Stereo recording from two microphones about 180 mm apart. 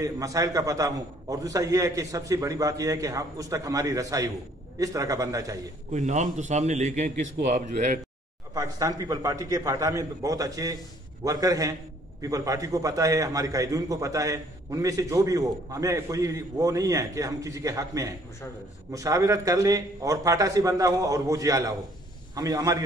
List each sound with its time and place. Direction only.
0.0 s a man's voice: 20° right (ahead or behind)
5.9 s a man's voice: 40° right (ahead or behind)
8.5 s a man's voice: 20° right (ahead or behind)